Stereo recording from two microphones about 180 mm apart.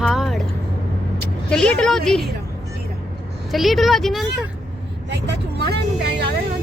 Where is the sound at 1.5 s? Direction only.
5° left (ahead or behind).